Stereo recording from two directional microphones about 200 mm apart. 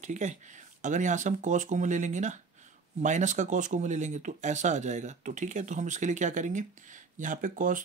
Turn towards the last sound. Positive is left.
turn(degrees=-40)  # may be behind; listen again after turning